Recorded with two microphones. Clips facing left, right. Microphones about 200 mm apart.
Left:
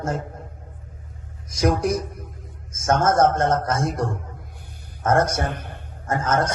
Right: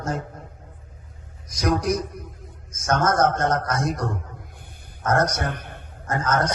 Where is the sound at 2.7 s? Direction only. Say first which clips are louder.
Left 2 dB; 25° left (ahead or behind).